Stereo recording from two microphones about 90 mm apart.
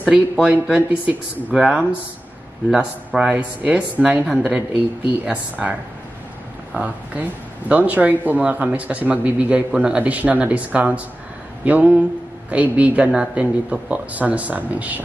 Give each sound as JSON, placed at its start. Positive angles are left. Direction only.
{"t": 0.0, "sound": "speech", "side_deg": -15}
{"t": 3.2, "sound": "speech", "side_deg": -10}